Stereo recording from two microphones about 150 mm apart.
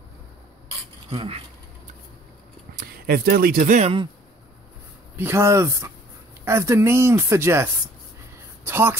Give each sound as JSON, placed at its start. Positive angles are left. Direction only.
{"t": 1.1, "sound": "speech", "side_deg": -40}
{"t": 3.1, "sound": "speech", "side_deg": -90}
{"t": 3.8, "sound": "speech", "side_deg": -35}
{"t": 5.1, "sound": "speech", "side_deg": -15}